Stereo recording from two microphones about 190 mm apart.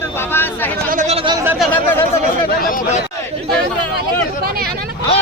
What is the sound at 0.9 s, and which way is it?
Chatter, 40° right (ahead or behind).